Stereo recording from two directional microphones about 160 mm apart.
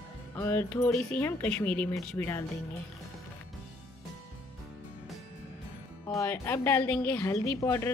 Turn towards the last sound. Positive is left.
turn(degrees=20)  # may be behind; listen again after turning